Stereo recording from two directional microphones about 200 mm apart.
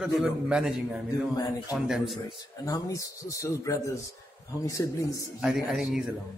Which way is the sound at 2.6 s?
15° left (ahead or behind).